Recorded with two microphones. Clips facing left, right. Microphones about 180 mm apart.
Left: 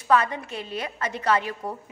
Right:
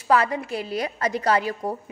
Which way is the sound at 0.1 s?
30° right (ahead or behind).